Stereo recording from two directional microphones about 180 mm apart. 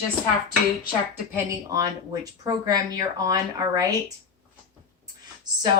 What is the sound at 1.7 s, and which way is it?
Speech, 20° right (ahead or behind).